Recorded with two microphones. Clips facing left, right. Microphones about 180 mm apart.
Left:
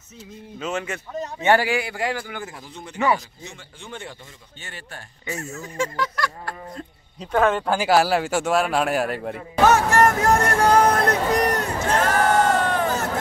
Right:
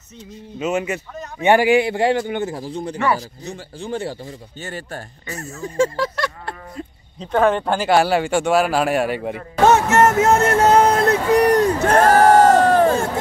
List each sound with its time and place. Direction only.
0.6 s a man's voice: 10° right (ahead or behind); by 6.5 s 25° right (ahead or behind)
7.3 s speech: centre (ahead or behind)
9.6 s a sound: 25° right (ahead or behind)
12.1 s crowd: 35° right (ahead or behind)